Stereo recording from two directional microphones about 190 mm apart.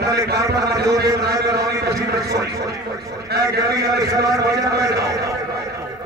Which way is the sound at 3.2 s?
60° right (ahead or behind).